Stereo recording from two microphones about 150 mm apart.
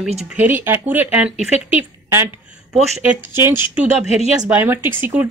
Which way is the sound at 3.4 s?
15° right (ahead or behind).